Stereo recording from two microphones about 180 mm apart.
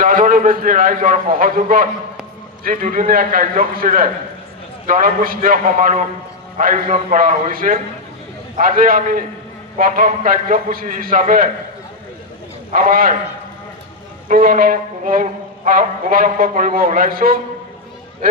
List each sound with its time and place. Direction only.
0.0 s speech: 50° right (ahead or behind)
12.7 s speech: 50° right (ahead or behind)
14.3 s speech: 50° right (ahead or behind)